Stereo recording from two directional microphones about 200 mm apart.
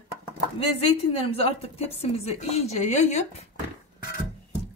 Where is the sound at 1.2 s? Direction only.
30° left (ahead or behind).